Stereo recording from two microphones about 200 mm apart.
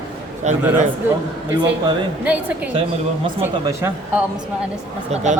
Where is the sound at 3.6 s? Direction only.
15° right (ahead or behind).